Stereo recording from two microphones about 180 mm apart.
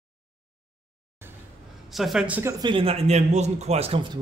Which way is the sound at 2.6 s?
30° right (ahead or behind).